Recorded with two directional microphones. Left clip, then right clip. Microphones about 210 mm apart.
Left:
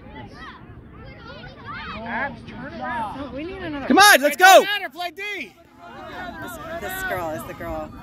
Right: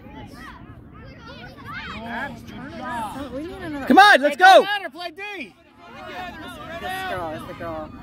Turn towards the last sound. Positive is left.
turn(degrees=5)  # may be behind; listen again after turning